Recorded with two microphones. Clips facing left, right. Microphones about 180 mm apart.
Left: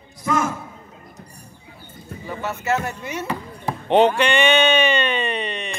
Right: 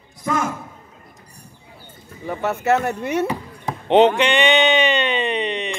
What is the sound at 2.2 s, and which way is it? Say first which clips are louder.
Speech: right 5 dB; 60° right (ahead or behind).